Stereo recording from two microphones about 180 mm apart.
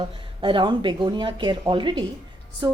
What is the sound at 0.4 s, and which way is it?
A woman's voice, 25° right (ahead or behind).